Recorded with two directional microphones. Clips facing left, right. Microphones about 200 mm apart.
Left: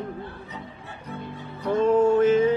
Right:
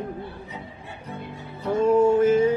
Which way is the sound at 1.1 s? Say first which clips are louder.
Left 1 dB; 10° right (ahead or behind).